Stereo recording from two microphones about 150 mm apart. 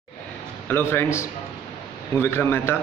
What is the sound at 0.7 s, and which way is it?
Speech, 15° left (ahead or behind).